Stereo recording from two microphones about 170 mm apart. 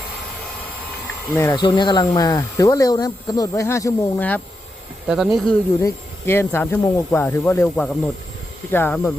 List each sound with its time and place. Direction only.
1.3 s speech: 15° left (ahead or behind)
1.5 s speech: 25° left (ahead or behind)
5.0 s speech: centre (ahead or behind)
5.8 s speech: 15° left (ahead or behind)
7.8 s speech: centre (ahead or behind)